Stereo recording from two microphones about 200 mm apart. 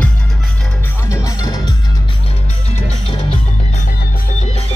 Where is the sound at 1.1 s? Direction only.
15° left (ahead or behind).